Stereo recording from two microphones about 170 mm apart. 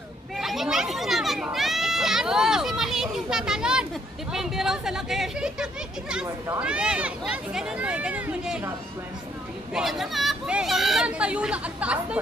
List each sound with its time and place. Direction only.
0.4 s children playing: centre (ahead or behind)
4.3 s speech: centre (ahead or behind)
6.2 s speech: 20° right (ahead or behind)
6.6 s speech: 5° right (ahead or behind)
9.8 s speech: centre (ahead or behind)